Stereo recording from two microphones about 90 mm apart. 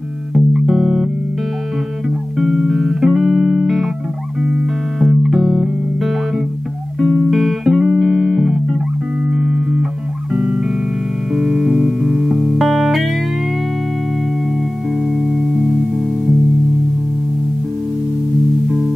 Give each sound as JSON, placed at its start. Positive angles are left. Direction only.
{"t": 0.3, "sound": "music", "side_deg": -5}
{"t": 2.3, "sound": "music", "side_deg": 0}
{"t": 15.0, "sound": "music", "side_deg": -5}